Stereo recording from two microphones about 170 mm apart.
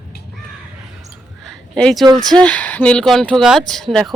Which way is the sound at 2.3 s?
10° left (ahead or behind).